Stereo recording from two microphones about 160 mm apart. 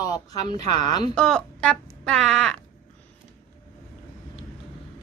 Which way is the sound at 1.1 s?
5° left (ahead or behind).